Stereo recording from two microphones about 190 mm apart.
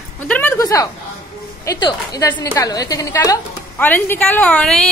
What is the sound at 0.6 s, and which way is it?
A woman's voice, 15° left (ahead or behind).